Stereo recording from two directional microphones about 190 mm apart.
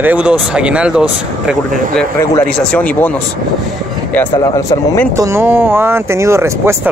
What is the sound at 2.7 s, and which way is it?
Speech, 5° left (ahead or behind).